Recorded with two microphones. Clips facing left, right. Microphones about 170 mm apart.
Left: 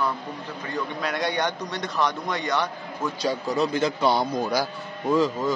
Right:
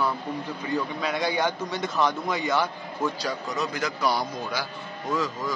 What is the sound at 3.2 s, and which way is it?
Speech, 30° left (ahead or behind).